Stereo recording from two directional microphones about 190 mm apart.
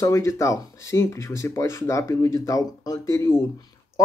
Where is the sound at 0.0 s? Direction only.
15° left (ahead or behind).